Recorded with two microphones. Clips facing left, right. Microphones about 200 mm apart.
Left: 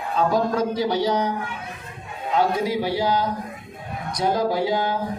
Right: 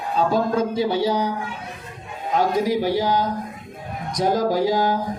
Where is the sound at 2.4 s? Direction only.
40° right (ahead or behind).